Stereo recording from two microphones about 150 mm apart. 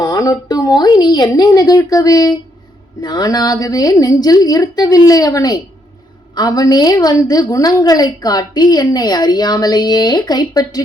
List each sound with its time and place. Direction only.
0.0 s a woman's voice: 25° left (ahead or behind)